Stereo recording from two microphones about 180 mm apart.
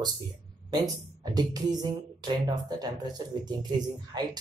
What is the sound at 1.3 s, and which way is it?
Speech, 20° right (ahead or behind).